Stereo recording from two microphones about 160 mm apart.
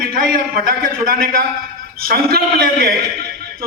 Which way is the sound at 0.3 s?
65° right (ahead or behind).